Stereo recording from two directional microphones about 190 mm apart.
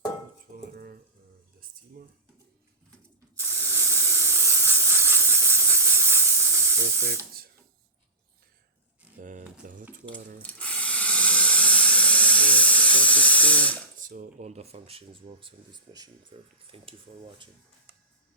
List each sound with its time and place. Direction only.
0.5 s stir: 50° right (ahead or behind)
2.0 s speech: 50° right (ahead or behind)
3.3 s spray: 15° right (ahead or behind)
9.2 s a sound: 45° right (ahead or behind)
9.9 s speech: 45° right (ahead or behind)
10.3 s steam: 5° left (ahead or behind)
14.0 s speech: 45° right (ahead or behind); by 16.9 s 30° right (ahead or behind)